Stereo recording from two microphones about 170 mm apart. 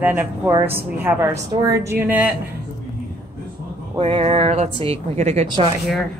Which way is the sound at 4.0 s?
35° right (ahead or behind).